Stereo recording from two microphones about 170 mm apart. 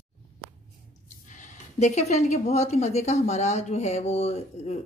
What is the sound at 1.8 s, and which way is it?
A woman's voice, 40° left (ahead or behind).